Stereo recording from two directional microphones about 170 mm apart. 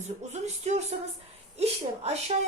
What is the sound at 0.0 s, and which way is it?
Speech, 40° right (ahead or behind).